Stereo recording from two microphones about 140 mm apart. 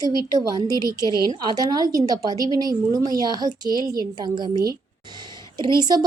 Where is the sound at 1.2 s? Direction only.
30° right (ahead or behind).